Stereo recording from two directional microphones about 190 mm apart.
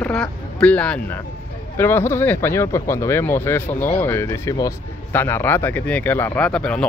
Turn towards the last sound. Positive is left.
turn(degrees=5)  # may be behind; listen again after turning